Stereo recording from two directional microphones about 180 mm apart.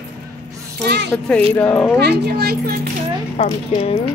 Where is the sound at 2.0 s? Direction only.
65° right (ahead or behind).